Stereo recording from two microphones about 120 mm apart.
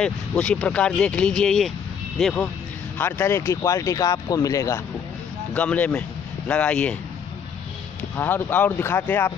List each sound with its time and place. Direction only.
0.0 s speech: 10° left (ahead or behind)
3.0 s speech: 20° left (ahead or behind)
5.5 s speech: 10° left (ahead or behind)
8.2 s speech: 15° left (ahead or behind)